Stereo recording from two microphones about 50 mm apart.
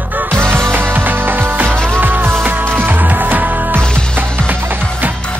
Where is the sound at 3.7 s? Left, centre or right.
Centre.